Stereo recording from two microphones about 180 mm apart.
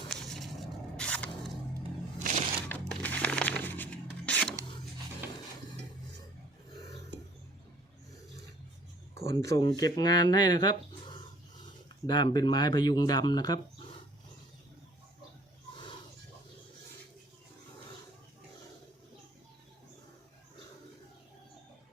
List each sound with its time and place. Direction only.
0.1 s a sound: 5° left (ahead or behind)
0.9 s scrape: 5° left (ahead or behind)
2.1 s music: 40° right (ahead or behind)
2.6 s music: 10° left (ahead or behind)
5.2 s a sound: 15° right (ahead or behind)
9.1 s speech: 15° left (ahead or behind)
15.7 s pig: 25° left (ahead or behind)